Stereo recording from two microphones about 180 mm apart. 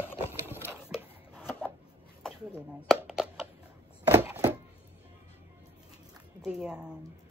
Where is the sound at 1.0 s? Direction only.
5° right (ahead or behind).